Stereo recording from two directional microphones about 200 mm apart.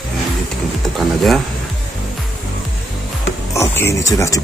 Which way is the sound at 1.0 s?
Centre (ahead or behind).